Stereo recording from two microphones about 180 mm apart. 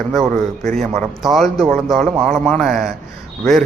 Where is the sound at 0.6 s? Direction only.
45° right (ahead or behind).